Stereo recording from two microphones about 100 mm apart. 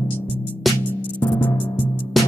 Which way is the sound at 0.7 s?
Centre (ahead or behind).